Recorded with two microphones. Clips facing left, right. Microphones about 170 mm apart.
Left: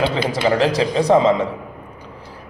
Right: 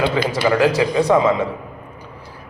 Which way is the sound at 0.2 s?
30° left (ahead or behind).